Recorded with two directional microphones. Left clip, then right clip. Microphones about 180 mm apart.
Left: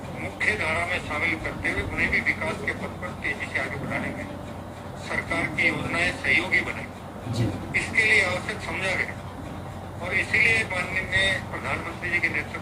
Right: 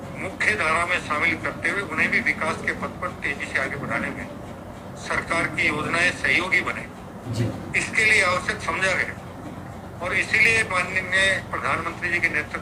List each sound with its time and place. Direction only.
0.3 s speech: 25° right (ahead or behind)
5.0 s speech: 25° right (ahead or behind)